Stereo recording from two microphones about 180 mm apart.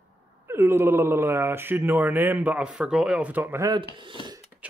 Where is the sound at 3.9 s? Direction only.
25° right (ahead or behind).